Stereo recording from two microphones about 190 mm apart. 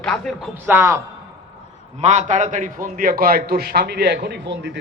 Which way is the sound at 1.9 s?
40° right (ahead or behind).